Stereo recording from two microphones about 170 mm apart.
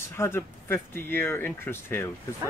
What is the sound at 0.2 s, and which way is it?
Speech, 15° left (ahead or behind).